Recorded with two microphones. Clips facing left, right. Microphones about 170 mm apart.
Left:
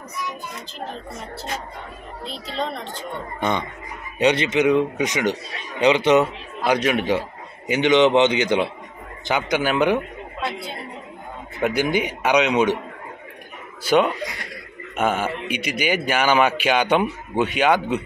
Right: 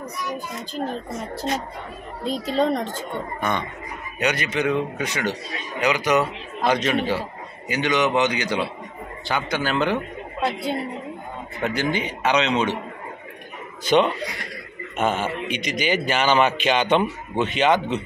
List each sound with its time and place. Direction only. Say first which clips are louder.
2.2 s speech: right 7 dB; 45° right (ahead or behind)
3.3 s speech: left 4 dB; 20° left (ahead or behind)
6.6 s a man's voice: left 1 dB; 10° left (ahead or behind)
11.6 s a man's voice: left 3 dB; 10° left (ahead or behind)
13.8 s a man's voice: even; 5° left (ahead or behind)